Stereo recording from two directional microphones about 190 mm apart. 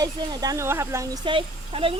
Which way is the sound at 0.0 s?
20° right (ahead or behind).